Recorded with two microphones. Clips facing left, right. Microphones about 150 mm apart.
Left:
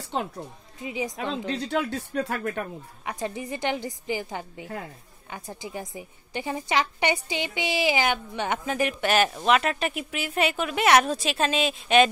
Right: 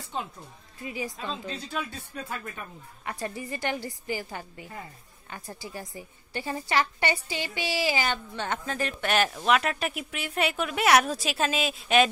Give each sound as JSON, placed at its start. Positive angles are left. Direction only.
{"t": 0.0, "sound": "music", "side_deg": 70}
{"t": 0.7, "sound": "a woman's voice", "side_deg": 20}
{"t": 1.1, "sound": "speech", "side_deg": 70}
{"t": 3.1, "sound": "a woman's voice", "side_deg": 20}
{"t": 9.0, "sound": "a woman's voice", "side_deg": 0}